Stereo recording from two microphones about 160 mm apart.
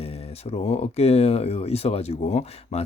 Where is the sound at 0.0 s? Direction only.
40° left (ahead or behind).